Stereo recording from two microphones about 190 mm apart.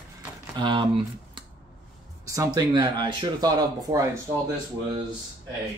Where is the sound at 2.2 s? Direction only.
15° right (ahead or behind).